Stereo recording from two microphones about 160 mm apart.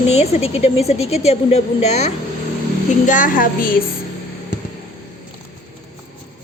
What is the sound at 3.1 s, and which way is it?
Speech, 55° left (ahead or behind).